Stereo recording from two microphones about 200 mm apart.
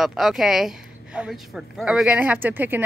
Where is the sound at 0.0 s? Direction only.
Centre (ahead or behind).